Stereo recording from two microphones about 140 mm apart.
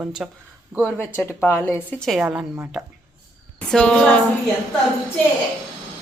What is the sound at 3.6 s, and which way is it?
Speech, 5° left (ahead or behind).